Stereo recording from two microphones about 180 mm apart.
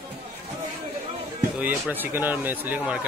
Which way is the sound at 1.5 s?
10° right (ahead or behind).